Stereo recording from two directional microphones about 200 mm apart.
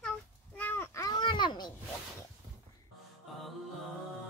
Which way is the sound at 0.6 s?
10° left (ahead or behind).